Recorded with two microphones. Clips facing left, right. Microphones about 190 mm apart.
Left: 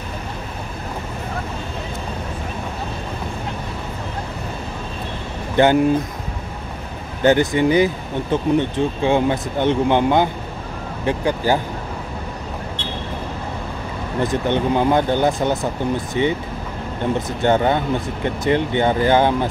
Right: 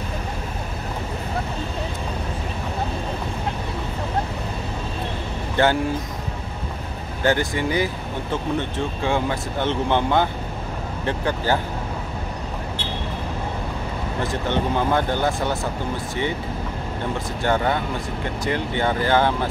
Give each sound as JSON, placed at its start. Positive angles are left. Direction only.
{"t": 5.6, "sound": "speech", "side_deg": 15}
{"t": 7.2, "sound": "speech", "side_deg": 20}
{"t": 14.2, "sound": "speech", "side_deg": 15}
{"t": 17.4, "sound": "speech", "side_deg": 20}